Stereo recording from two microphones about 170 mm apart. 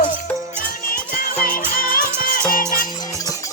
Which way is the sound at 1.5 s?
55° left (ahead or behind).